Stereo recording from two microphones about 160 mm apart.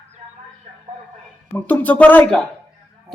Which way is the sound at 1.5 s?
10° left (ahead or behind).